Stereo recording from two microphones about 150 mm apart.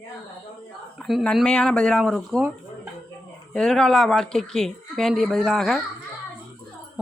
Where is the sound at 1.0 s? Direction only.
Centre (ahead or behind).